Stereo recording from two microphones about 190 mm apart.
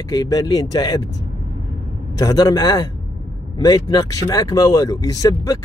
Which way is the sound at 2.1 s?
20° left (ahead or behind).